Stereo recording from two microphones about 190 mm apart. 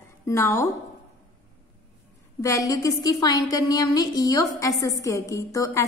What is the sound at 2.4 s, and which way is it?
A woman's voice, 15° left (ahead or behind).